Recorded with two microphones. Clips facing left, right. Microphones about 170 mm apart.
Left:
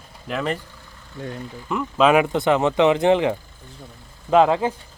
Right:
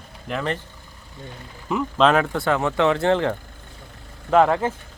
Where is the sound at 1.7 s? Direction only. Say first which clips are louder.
Left 1 dB; centre (ahead or behind).